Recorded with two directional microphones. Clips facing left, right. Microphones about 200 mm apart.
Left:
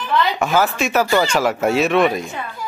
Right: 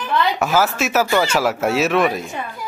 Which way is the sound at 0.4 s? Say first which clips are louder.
Even; 5° right (ahead or behind).